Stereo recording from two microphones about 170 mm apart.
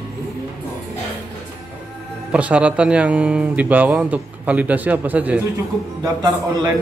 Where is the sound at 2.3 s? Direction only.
5° right (ahead or behind).